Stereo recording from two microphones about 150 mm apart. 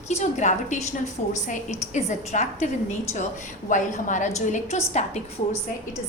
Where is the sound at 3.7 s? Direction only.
55° left (ahead or behind).